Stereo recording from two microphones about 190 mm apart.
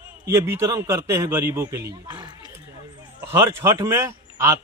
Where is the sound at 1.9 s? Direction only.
20° right (ahead or behind).